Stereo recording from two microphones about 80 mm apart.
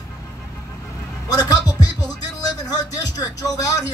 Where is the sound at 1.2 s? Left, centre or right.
Left.